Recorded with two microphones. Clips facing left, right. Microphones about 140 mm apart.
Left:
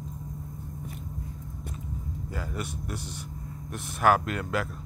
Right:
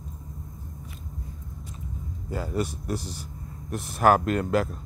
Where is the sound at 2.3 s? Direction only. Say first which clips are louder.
Right 8 dB; 30° right (ahead or behind).